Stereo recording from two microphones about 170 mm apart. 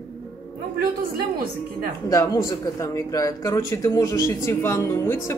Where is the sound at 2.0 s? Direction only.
20° left (ahead or behind).